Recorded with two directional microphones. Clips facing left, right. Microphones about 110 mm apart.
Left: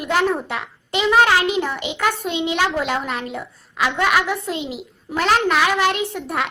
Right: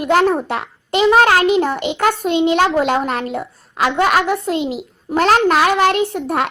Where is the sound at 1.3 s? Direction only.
60° right (ahead or behind).